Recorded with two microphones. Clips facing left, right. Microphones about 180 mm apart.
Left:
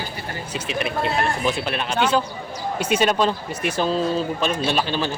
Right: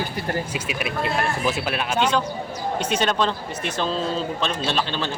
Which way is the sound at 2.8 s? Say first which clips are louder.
Left 3 dB; 10° left (ahead or behind).